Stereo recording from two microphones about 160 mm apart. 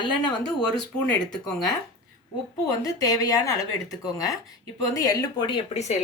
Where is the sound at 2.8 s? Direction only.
20° left (ahead or behind).